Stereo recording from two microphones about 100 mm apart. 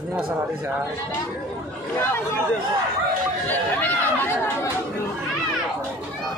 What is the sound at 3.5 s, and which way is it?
Chatter, 20° left (ahead or behind).